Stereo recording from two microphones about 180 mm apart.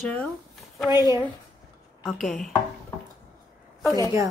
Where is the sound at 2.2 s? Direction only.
Centre (ahead or behind).